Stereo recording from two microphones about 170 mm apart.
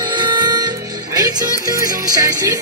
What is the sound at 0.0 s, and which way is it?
Music, 25° right (ahead or behind).